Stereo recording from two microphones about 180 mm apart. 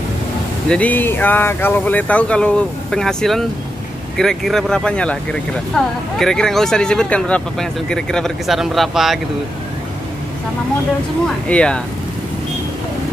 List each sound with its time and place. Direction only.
0.7 s speech: 10° left (ahead or behind)
11.4 s speech: 5° left (ahead or behind)